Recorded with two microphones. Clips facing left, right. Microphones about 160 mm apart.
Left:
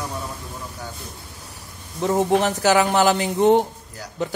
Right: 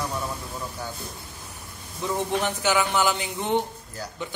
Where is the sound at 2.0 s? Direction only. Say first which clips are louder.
Left 7 dB; 40° left (ahead or behind).